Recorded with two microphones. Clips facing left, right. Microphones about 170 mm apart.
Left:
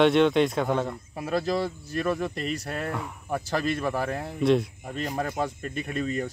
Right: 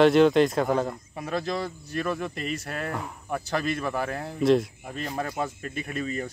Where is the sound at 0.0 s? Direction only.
Centre (ahead or behind).